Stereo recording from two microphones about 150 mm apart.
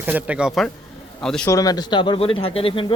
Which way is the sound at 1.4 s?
25° left (ahead or behind).